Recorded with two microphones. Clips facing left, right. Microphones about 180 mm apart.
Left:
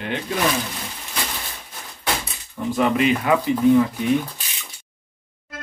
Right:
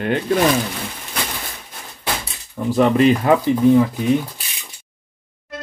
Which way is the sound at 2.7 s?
40° right (ahead or behind).